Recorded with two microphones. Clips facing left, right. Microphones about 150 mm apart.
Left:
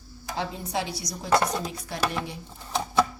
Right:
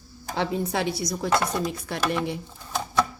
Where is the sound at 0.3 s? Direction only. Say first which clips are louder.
Right 4 dB; 60° right (ahead or behind).